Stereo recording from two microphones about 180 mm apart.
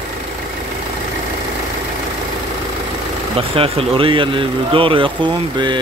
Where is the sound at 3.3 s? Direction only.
30° right (ahead or behind).